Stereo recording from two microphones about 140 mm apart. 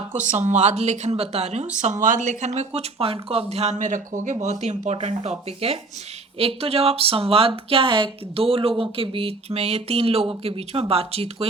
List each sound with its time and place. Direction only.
0.1 s speech: 60° right (ahead or behind)
1.8 s a woman's voice: 65° right (ahead or behind); by 11.4 s 45° right (ahead or behind)